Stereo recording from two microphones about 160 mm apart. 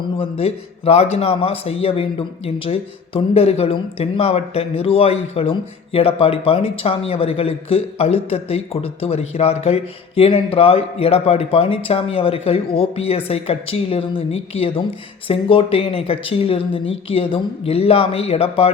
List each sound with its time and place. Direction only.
0.2 s a man's voice: 40° left (ahead or behind)